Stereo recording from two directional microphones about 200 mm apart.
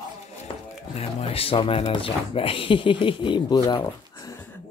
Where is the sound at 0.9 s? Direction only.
30° left (ahead or behind).